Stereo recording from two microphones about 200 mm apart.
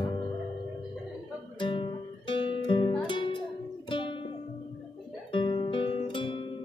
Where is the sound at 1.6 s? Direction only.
25° left (ahead or behind).